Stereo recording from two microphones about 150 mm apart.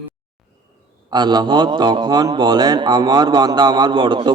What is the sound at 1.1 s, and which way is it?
A man's voice, 30° right (ahead or behind).